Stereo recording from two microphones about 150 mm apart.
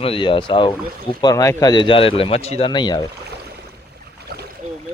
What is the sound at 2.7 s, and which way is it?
Speech, 30° left (ahead or behind).